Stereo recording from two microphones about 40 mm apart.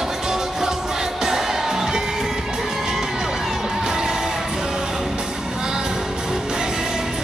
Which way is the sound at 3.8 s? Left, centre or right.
Centre.